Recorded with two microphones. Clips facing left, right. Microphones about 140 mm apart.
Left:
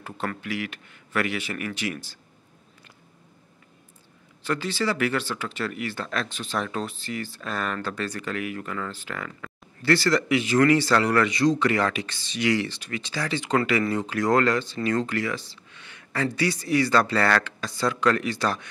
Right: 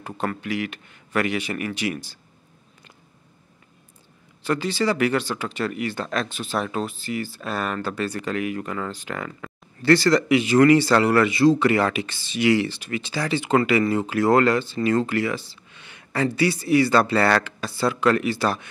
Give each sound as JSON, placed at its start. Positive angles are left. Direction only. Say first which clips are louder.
{"t": 0.0, "sound": "speech", "louder": "right 4 dB", "side_deg": -20}
{"t": 4.5, "sound": "speech", "louder": "right 4 dB", "side_deg": -15}
{"t": 8.4, "sound": "speech", "louder": "right 4 dB", "side_deg": -20}